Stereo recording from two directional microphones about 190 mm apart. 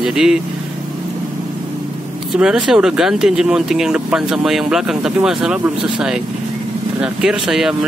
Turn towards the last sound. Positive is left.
turn(degrees=-5)  # may be behind; listen again after turning